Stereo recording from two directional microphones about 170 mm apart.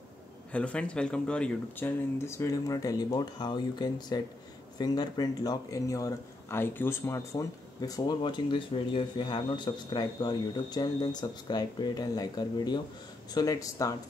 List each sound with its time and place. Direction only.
0.5 s speech: 5° left (ahead or behind)